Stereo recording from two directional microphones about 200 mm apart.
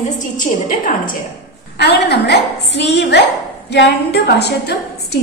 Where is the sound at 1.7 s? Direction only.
55° left (ahead or behind).